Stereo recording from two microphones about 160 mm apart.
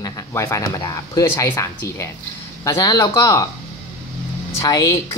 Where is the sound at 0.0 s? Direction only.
20° left (ahead or behind).